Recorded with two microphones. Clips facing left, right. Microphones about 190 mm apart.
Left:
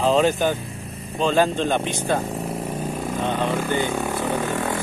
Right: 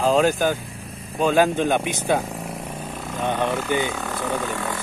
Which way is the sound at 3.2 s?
15° right (ahead or behind).